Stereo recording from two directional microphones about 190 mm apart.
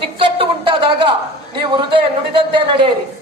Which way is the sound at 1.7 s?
25° right (ahead or behind).